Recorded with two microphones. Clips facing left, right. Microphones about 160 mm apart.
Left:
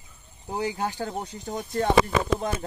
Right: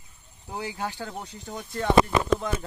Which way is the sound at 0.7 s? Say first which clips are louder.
Left 4 dB; 40° left (ahead or behind).